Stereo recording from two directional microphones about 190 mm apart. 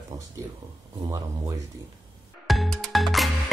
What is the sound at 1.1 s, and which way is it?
Speech, 15° right (ahead or behind).